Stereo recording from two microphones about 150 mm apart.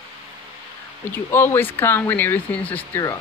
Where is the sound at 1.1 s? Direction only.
15° left (ahead or behind).